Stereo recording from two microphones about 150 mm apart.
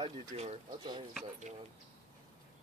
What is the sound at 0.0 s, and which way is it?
Speech, 30° right (ahead or behind).